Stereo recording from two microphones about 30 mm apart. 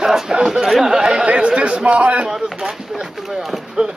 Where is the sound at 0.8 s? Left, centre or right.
Right.